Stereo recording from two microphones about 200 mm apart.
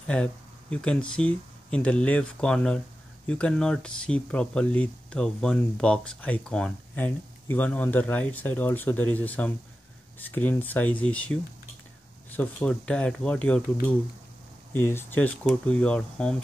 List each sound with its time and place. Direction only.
0.0 s speech: 5° left (ahead or behind)
14.7 s speech: 10° left (ahead or behind)